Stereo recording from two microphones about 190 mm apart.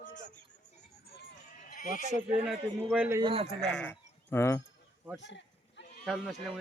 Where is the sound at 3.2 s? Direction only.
25° right (ahead or behind).